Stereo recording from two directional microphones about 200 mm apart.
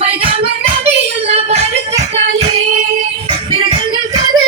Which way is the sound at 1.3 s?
30° right (ahead or behind).